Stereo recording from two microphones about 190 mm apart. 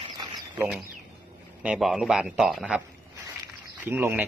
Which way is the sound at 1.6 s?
5° right (ahead or behind).